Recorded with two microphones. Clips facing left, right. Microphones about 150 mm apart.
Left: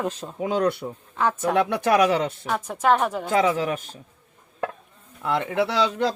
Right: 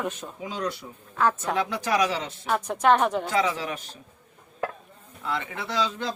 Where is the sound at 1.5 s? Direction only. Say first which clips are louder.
Left 5 dB; 60° left (ahead or behind).